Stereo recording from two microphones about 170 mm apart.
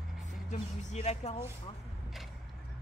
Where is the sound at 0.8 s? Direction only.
45° left (ahead or behind).